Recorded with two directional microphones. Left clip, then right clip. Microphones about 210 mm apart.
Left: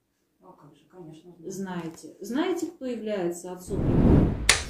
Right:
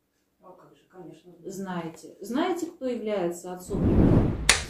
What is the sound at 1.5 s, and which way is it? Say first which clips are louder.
A woman's voice: right 1 dB; 5° left (ahead or behind).